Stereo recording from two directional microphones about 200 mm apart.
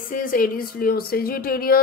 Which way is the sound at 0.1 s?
45° left (ahead or behind).